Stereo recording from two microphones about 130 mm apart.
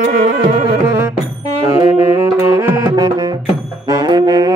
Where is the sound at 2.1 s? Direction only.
25° right (ahead or behind).